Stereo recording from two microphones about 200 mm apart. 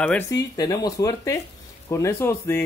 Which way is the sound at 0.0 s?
10° left (ahead or behind).